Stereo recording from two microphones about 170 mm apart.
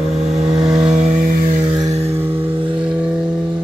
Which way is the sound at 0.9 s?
45° right (ahead or behind).